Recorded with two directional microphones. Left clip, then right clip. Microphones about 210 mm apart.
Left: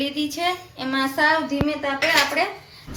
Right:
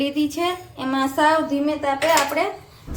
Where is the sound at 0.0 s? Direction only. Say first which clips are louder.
Right 2 dB; 55° right (ahead or behind).